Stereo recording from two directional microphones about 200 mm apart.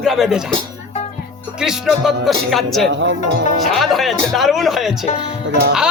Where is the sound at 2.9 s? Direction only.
60° right (ahead or behind).